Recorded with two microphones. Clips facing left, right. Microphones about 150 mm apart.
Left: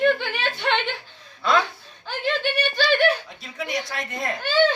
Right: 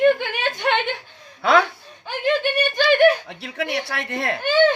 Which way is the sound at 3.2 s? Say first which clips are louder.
Right 5 dB; 70° right (ahead or behind).